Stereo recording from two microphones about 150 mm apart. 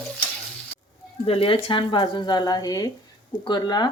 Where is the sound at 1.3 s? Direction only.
40° left (ahead or behind).